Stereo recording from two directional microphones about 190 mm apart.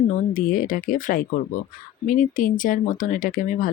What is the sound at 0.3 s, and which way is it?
Speech, 45° left (ahead or behind).